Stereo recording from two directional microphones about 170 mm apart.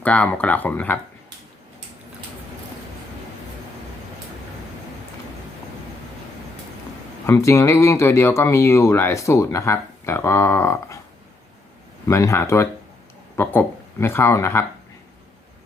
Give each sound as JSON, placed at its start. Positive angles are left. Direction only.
{"t": 0.0, "sound": "speech", "side_deg": 10}
{"t": 7.3, "sound": "speech", "side_deg": 15}
{"t": 12.0, "sound": "speech", "side_deg": 15}